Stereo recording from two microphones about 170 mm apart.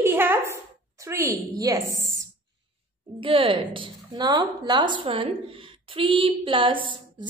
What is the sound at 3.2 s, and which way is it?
A woman's voice, 30° right (ahead or behind).